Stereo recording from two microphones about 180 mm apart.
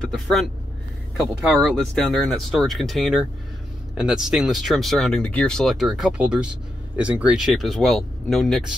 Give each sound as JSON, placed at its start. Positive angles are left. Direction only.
{"t": 0.0, "sound": "speech", "side_deg": 0}